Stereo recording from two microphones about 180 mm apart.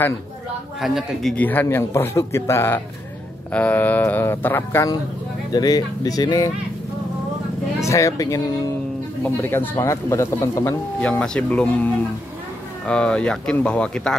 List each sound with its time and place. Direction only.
0.7 s speech: centre (ahead or behind); by 6.5 s 20° left (ahead or behind)
7.8 s speech: 15° left (ahead or behind)